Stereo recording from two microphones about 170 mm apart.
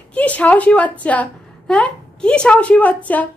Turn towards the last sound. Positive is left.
turn(degrees=10)  # may be behind; listen again after turning